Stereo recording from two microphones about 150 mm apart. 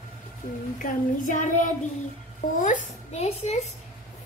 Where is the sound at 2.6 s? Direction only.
55° left (ahead or behind).